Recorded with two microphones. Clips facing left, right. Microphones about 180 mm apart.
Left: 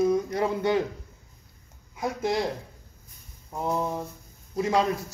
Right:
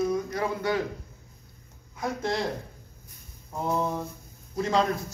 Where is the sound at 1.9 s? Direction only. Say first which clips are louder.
Left 2 dB; 15° left (ahead or behind).